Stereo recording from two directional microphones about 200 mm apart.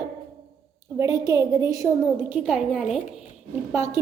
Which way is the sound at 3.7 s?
15° right (ahead or behind).